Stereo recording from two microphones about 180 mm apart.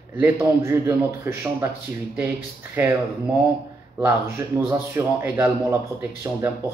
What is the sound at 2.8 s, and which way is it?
Speech, 10° right (ahead or behind).